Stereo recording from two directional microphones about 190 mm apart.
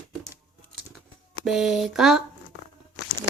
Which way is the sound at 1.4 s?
Centre (ahead or behind).